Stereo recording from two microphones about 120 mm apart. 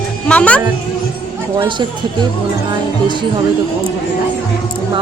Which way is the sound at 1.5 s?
40° right (ahead or behind).